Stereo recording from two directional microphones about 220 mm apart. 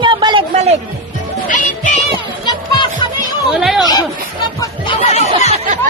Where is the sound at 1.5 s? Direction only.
35° left (ahead or behind).